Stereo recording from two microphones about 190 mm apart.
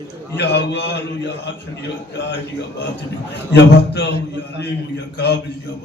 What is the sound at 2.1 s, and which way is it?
Speech, 65° left (ahead or behind).